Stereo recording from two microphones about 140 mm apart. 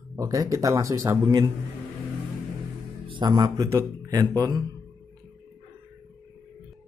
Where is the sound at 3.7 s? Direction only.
20° right (ahead or behind).